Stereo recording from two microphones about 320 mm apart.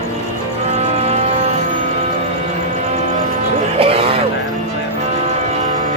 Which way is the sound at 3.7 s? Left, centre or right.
Centre.